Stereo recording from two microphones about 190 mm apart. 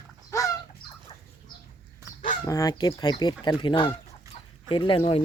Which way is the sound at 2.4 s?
20° left (ahead or behind).